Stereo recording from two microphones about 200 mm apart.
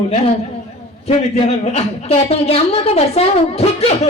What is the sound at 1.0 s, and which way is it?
A man's voice, 35° left (ahead or behind).